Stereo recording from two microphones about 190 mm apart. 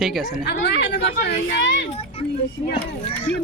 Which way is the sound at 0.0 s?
Centre (ahead or behind).